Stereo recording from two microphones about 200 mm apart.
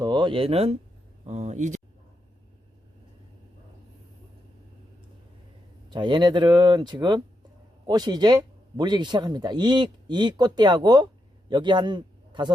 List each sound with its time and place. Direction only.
0.0 s speech: 20° right (ahead or behind)
5.9 s speech: 25° right (ahead or behind)